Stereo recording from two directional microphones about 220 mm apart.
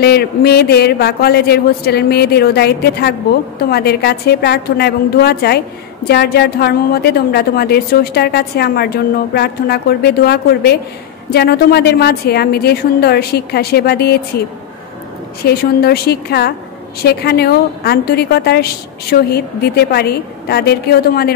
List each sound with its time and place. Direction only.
0.0 s a woman's voice: 45° left (ahead or behind)
15.4 s a woman's voice: 45° left (ahead or behind)